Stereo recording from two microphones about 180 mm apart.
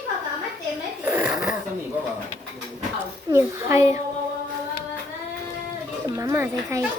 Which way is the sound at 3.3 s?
15° right (ahead or behind).